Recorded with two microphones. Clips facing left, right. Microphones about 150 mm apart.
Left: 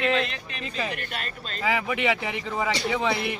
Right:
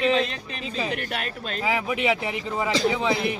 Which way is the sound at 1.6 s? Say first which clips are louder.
Even; 5° right (ahead or behind).